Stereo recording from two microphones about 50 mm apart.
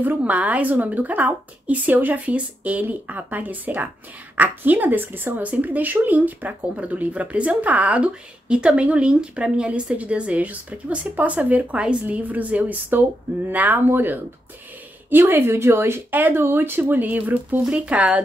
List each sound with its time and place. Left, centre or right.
0.2 s speech: right
5.4 s speech: right